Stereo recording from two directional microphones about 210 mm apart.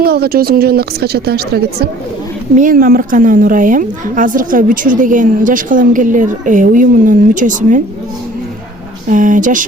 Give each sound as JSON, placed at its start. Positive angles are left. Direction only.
{"t": 0.0, "sound": "a woman's voice", "side_deg": -50}
{"t": 9.0, "sound": "a woman's voice", "side_deg": -40}